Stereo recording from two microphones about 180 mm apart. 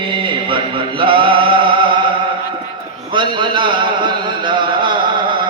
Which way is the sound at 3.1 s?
25° right (ahead or behind).